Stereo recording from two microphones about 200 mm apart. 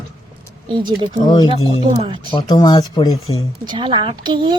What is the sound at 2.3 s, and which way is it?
Speech, 20° left (ahead or behind).